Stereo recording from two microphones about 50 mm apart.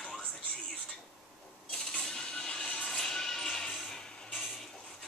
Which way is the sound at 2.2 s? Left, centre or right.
Centre.